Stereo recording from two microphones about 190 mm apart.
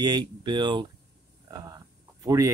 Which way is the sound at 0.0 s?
20° right (ahead or behind).